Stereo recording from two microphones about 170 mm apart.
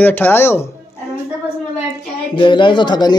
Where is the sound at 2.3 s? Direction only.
30° left (ahead or behind).